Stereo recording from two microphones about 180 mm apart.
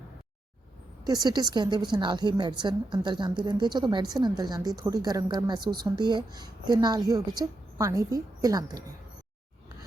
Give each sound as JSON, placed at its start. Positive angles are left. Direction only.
{"t": 1.0, "sound": "a woman's voice", "side_deg": -20}